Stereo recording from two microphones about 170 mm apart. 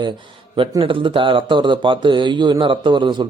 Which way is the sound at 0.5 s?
30° right (ahead or behind).